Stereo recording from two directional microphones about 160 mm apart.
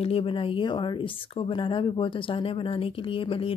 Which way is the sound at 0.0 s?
35° left (ahead or behind).